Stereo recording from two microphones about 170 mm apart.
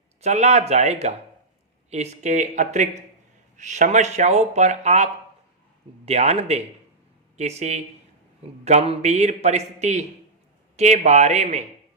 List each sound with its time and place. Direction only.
0.2 s a man's voice: 40° right (ahead or behind)
6.1 s a man's voice: 40° right (ahead or behind)